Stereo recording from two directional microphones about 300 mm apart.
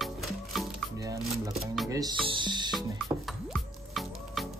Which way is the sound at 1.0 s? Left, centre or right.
Centre.